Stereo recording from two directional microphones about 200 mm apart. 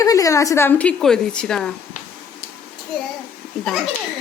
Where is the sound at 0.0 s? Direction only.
15° left (ahead or behind).